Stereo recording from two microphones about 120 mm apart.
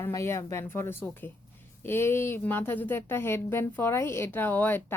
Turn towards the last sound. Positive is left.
turn(degrees=15)  # may be behind; listen again after turning